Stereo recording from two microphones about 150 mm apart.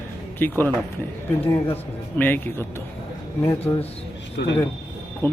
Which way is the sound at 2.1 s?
15° left (ahead or behind).